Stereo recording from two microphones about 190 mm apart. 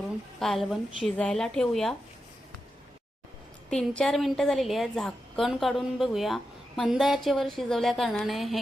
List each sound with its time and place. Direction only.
0.3 s a woman's voice: centre (ahead or behind)
3.7 s a woman's voice: 5° left (ahead or behind)